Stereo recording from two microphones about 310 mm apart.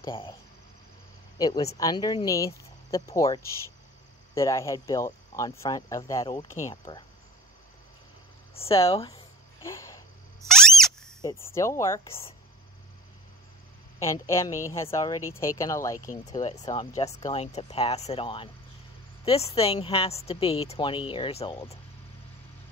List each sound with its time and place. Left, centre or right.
0.0 s speech: centre
1.4 s speech: centre
4.4 s speech: centre
8.5 s a sound: centre
10.5 s speech: centre
13.9 s speech: centre
16.3 s speech: left